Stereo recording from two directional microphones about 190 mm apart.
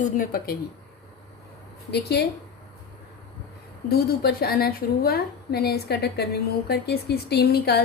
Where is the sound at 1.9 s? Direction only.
60° left (ahead or behind).